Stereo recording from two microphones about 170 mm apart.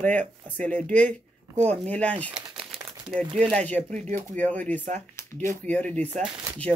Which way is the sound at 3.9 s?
45° right (ahead or behind).